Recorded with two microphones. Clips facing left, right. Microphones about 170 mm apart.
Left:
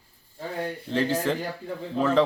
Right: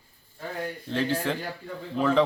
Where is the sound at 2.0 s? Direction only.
10° right (ahead or behind).